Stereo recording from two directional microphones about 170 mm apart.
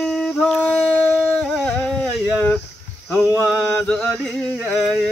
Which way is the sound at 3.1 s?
20° left (ahead or behind).